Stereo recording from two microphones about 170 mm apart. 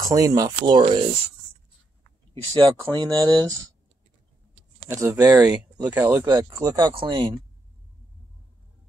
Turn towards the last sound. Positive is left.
turn(degrees=-25)  # may be behind; listen again after turning